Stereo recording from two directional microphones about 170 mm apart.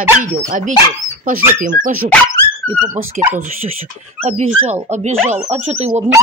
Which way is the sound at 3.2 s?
50° right (ahead or behind).